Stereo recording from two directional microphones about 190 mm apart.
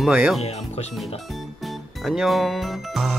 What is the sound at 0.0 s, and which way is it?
Speech, 5° right (ahead or behind).